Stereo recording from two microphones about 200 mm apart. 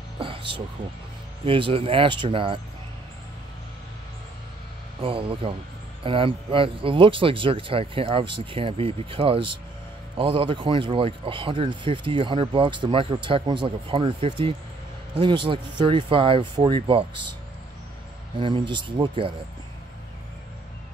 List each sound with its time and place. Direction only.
0.2 s music: 25° right (ahead or behind)
1.4 s speech: 25° right (ahead or behind)
5.0 s speech: 25° right (ahead or behind)
18.4 s speech: 25° right (ahead or behind)